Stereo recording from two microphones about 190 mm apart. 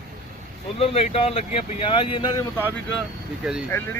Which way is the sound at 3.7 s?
15° left (ahead or behind).